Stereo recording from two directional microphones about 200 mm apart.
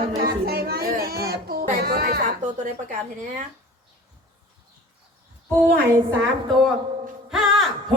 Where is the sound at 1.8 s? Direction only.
50° right (ahead or behind).